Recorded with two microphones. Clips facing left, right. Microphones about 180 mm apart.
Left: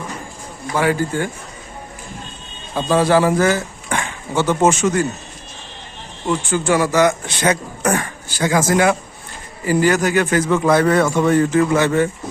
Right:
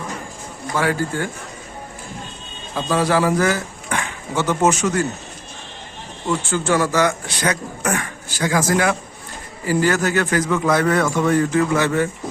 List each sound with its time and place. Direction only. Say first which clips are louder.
0.8 s a man's voice: left 3 dB; 15° left (ahead or behind)
2.7 s speech: left 4 dB; 30° left (ahead or behind)
6.2 s speech: left 2 dB; 15° left (ahead or behind)